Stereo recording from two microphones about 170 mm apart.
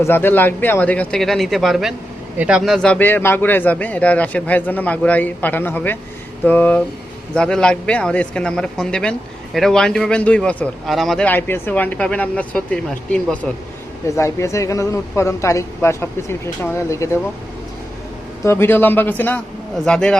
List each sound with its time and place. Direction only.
0.0 s a man's voice: 10° left (ahead or behind)
18.4 s a man's voice: 15° left (ahead or behind)